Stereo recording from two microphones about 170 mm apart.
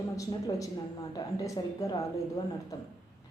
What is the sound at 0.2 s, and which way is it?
A woman's voice, 20° left (ahead or behind).